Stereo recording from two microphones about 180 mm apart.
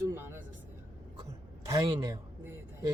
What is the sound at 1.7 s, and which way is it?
Speech, 20° right (ahead or behind).